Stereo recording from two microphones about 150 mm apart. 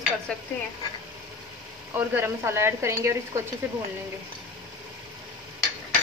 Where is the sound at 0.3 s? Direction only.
5° left (ahead or behind).